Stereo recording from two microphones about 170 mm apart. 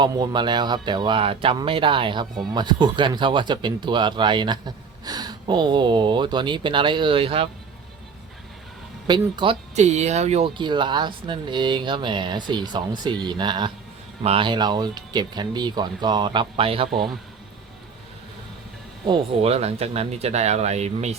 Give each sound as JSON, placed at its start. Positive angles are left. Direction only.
{"t": 0.0, "sound": "speech", "side_deg": -25}
{"t": 9.0, "sound": "speech", "side_deg": -25}
{"t": 9.7, "sound": "speech", "side_deg": -40}
{"t": 19.0, "sound": "speech", "side_deg": -30}